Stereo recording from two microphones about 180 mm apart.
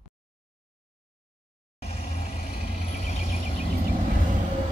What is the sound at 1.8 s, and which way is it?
Vehicle, 35° left (ahead or behind).